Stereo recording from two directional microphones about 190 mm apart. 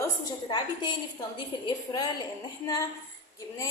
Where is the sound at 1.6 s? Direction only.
20° left (ahead or behind).